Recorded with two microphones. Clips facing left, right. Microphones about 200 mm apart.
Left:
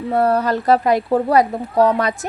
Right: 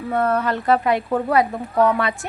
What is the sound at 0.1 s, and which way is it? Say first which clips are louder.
Speech: left 3 dB; 35° left (ahead or behind).